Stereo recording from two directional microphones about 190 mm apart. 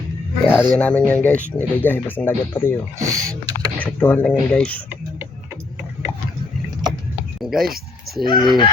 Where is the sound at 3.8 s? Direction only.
10° left (ahead or behind).